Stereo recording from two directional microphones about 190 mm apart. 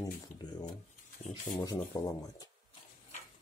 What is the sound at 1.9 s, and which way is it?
Speech, 20° left (ahead or behind).